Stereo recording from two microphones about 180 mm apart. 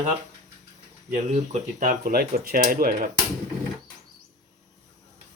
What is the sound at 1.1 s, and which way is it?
Speech, 45° right (ahead or behind).